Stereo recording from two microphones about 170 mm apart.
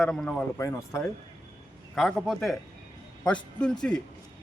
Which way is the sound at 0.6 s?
15° left (ahead or behind).